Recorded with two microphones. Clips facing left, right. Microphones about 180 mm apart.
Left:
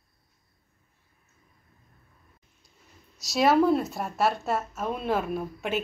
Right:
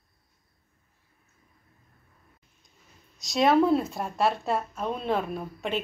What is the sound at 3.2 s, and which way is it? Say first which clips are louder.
Speech: even; centre (ahead or behind).